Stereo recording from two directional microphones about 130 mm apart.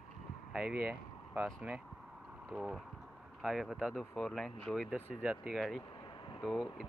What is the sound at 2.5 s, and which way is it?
Speech, 5° right (ahead or behind).